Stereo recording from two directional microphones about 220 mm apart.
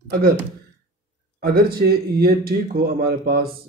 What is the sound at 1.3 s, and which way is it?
Speech, 45° right (ahead or behind).